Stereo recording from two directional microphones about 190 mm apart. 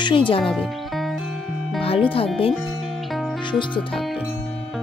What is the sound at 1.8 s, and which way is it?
Speech, 30° left (ahead or behind).